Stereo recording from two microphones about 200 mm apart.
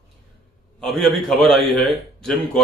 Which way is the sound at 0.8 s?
Centre (ahead or behind).